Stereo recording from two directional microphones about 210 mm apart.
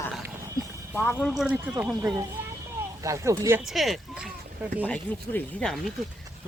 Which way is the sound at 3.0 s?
15° right (ahead or behind).